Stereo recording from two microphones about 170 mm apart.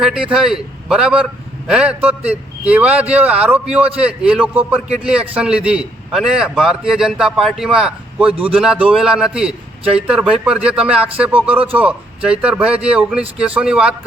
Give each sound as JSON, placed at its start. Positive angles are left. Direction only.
{"t": 0.0, "sound": "a man's voice", "side_deg": -5}
{"t": 11.5, "sound": "a man's voice", "side_deg": -35}
{"t": 11.8, "sound": "a man's voice", "side_deg": -5}